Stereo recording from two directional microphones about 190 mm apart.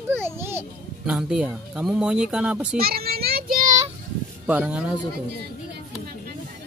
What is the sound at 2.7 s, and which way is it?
Child singing, 55° right (ahead or behind).